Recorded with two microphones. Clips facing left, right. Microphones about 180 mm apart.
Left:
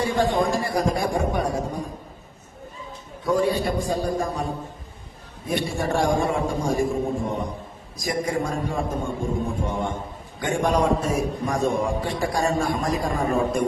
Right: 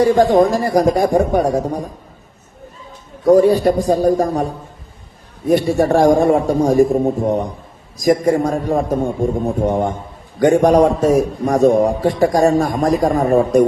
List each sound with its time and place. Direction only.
0.0 s speech: 40° right (ahead or behind)
3.2 s speech: 40° right (ahead or behind)
5.5 s a man's voice: 45° right (ahead or behind)